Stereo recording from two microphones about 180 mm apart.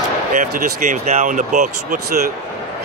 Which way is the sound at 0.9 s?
40° right (ahead or behind).